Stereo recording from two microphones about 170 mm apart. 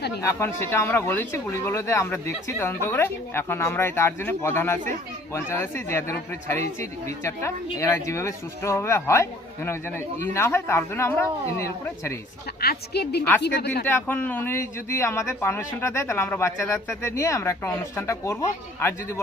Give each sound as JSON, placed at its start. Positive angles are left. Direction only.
{"t": 0.2, "sound": "speech", "side_deg": 15}
{"t": 10.3, "sound": "speech", "side_deg": 15}
{"t": 12.5, "sound": "a woman's voice", "side_deg": 65}
{"t": 13.8, "sound": "speech", "side_deg": 10}